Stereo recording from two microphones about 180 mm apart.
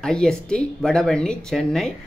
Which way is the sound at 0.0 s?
5° left (ahead or behind).